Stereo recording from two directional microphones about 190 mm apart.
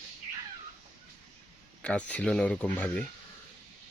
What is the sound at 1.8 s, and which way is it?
Speech, 5° left (ahead or behind).